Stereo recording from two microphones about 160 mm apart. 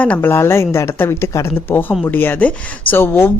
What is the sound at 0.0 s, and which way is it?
Speech, 10° left (ahead or behind).